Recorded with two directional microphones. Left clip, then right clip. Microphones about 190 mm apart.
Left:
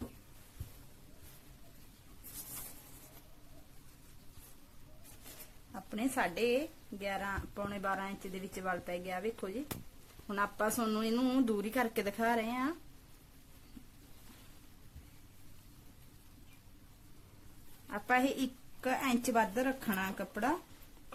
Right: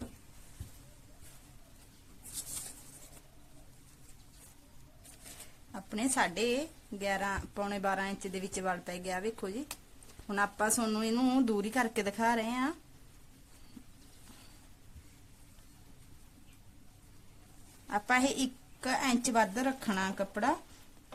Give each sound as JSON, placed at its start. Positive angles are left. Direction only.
{"t": 5.7, "sound": "speech", "side_deg": -45}
{"t": 17.8, "sound": "a woman's voice", "side_deg": -35}